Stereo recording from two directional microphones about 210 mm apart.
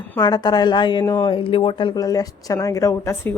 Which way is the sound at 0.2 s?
20° left (ahead or behind).